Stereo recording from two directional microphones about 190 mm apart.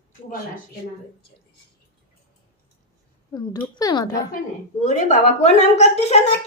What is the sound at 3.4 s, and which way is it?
Speech, 20° left (ahead or behind).